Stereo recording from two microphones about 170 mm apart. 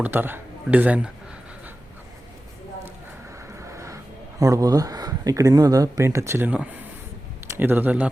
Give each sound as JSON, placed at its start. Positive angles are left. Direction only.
{"t": 0.0, "sound": "speech", "side_deg": -10}
{"t": 3.3, "sound": "speech", "side_deg": -15}